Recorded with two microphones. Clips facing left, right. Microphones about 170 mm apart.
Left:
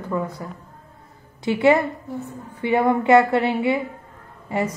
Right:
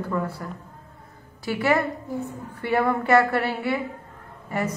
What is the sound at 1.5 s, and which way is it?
A woman's voice, 25° left (ahead or behind).